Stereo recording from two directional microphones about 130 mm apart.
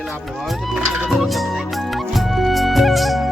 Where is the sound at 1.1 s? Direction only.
Centre (ahead or behind).